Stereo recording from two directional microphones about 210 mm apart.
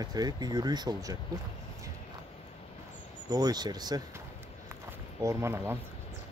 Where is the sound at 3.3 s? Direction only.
20° right (ahead or behind).